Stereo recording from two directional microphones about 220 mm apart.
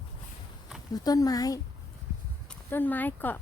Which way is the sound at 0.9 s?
15° left (ahead or behind).